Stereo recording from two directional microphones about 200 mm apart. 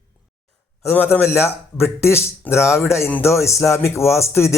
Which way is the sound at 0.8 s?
10° left (ahead or behind).